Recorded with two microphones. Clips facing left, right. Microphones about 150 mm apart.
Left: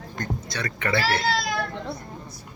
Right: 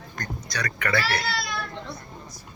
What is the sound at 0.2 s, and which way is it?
Speech, 25° left (ahead or behind).